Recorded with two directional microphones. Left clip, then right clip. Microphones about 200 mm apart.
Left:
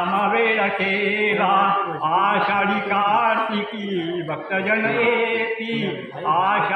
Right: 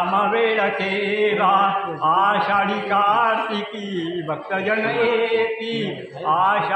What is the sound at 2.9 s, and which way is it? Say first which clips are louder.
Speech: right 2 dB; 10° right (ahead or behind).